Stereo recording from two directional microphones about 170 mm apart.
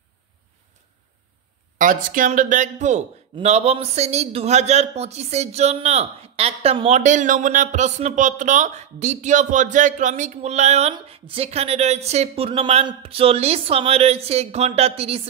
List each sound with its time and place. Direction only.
1.8 s a man's voice: 50° right (ahead or behind); by 15.2 s 35° right (ahead or behind)